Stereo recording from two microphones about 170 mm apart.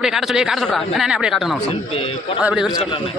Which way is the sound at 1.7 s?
35° left (ahead or behind).